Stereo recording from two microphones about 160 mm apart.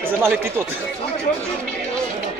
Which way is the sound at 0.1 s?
15° right (ahead or behind).